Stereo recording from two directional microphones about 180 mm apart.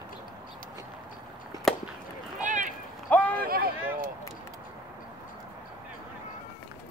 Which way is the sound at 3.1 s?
10° left (ahead or behind).